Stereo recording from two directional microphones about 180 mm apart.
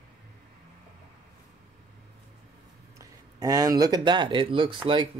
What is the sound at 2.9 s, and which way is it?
Speech, 20° right (ahead or behind).